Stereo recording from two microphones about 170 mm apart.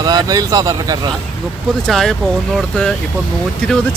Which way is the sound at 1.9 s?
Centre (ahead or behind).